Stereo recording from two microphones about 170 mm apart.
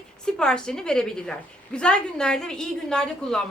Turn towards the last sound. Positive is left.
turn(degrees=5)  # may be behind; listen again after turning